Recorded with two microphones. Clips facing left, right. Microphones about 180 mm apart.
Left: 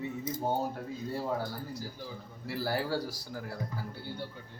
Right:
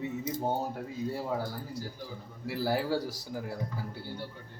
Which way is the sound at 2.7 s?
15° right (ahead or behind).